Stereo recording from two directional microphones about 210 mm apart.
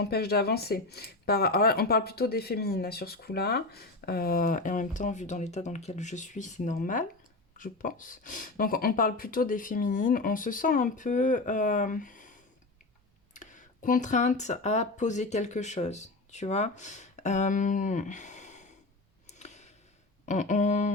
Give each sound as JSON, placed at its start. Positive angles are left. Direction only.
{"t": 0.0, "sound": "speech", "side_deg": 50}
{"t": 19.3, "sound": "a sound", "side_deg": 35}
{"t": 20.2, "sound": "speech", "side_deg": 35}